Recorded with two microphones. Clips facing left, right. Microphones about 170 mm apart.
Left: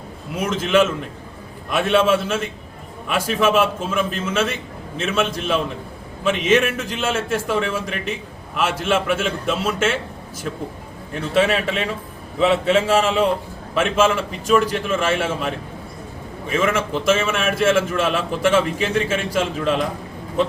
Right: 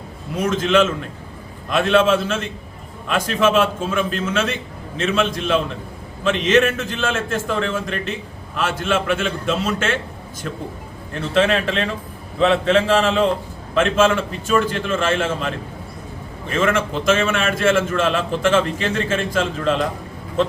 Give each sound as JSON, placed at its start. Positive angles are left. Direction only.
{"t": 0.3, "sound": "a man's voice", "side_deg": 5}
{"t": 11.1, "sound": "a man's voice", "side_deg": 5}